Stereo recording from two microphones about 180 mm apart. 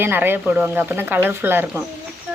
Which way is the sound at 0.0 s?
10° right (ahead or behind).